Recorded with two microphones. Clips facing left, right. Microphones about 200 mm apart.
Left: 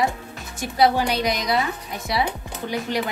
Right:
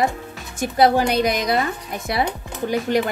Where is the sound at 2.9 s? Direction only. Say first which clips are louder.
Right 6 dB; 50° right (ahead or behind).